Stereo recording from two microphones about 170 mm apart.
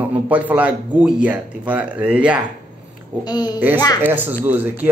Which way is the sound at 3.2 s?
25° left (ahead or behind).